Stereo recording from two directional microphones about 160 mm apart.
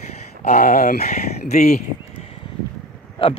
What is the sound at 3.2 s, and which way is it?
Speech, 30° left (ahead or behind).